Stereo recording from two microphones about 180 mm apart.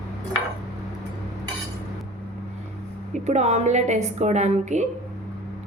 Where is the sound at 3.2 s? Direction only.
40° right (ahead or behind).